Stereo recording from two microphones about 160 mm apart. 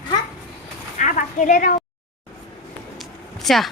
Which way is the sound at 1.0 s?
50° left (ahead or behind).